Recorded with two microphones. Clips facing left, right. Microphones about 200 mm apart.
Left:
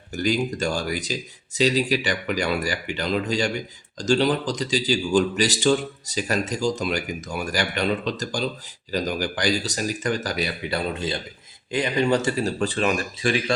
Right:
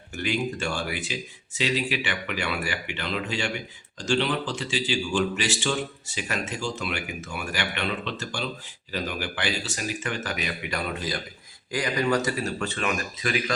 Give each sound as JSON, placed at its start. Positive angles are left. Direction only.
{"t": 0.2, "sound": "speech", "side_deg": 40}